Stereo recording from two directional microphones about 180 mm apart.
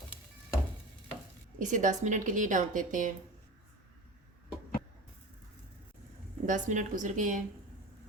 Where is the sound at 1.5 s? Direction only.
45° right (ahead or behind).